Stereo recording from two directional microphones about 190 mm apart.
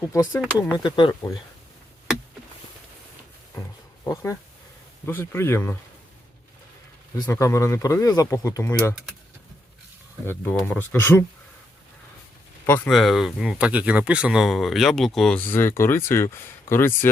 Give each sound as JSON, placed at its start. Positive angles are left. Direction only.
{"t": 0.1, "sound": "speech", "side_deg": 15}
{"t": 0.8, "sound": "speech", "side_deg": 25}
{"t": 4.0, "sound": "speech", "side_deg": 15}
{"t": 7.2, "sound": "speech", "side_deg": 15}
{"t": 10.2, "sound": "speech", "side_deg": 5}
{"t": 12.6, "sound": "speech", "side_deg": 10}
{"t": 12.9, "sound": "speech", "side_deg": 0}